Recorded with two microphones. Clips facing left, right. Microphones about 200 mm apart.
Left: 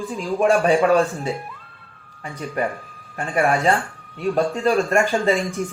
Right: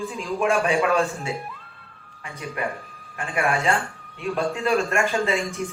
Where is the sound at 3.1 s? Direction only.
35° left (ahead or behind).